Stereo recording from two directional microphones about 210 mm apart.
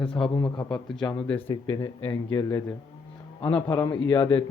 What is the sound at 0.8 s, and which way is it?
Speech, 5° left (ahead or behind).